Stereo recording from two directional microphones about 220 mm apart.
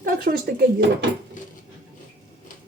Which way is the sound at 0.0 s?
40° right (ahead or behind).